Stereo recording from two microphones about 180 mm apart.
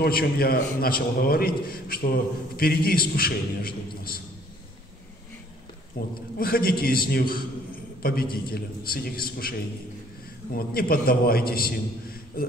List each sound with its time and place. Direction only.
0.0 s a man's voice: 55° left (ahead or behind)
6.0 s a man's voice: 55° left (ahead or behind)